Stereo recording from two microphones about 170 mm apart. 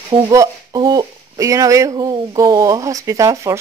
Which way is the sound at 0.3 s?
20° right (ahead or behind).